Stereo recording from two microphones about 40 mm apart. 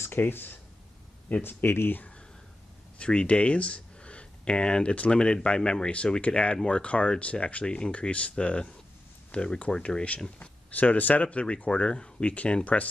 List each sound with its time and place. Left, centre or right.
0.0 s speech: left
3.0 s speech: left
10.7 s speech: left